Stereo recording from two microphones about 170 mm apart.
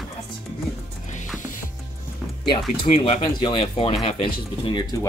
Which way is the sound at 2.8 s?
30° left (ahead or behind).